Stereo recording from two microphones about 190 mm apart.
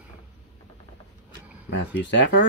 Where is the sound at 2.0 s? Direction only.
70° left (ahead or behind).